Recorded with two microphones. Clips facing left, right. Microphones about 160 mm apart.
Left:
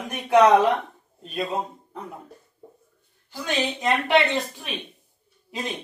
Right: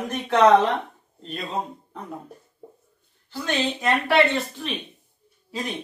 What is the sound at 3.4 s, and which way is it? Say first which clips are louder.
Speech: right 1 dB; 15° left (ahead or behind).